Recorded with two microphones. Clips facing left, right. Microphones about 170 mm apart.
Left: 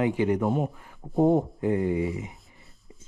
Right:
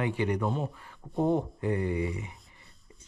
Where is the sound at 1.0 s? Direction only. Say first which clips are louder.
Left 6 dB; 35° left (ahead or behind).